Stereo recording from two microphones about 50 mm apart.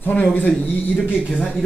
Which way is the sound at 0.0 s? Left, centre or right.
Left.